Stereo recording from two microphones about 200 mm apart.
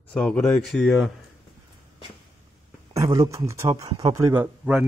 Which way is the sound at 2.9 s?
15° right (ahead or behind).